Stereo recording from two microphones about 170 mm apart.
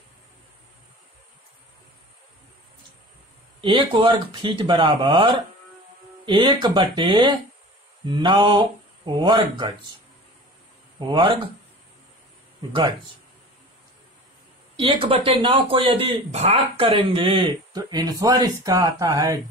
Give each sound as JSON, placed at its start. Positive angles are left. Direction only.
{"t": 3.6, "sound": "speech", "side_deg": -30}
{"t": 11.0, "sound": "speech", "side_deg": -30}
{"t": 14.8, "sound": "speech", "side_deg": -35}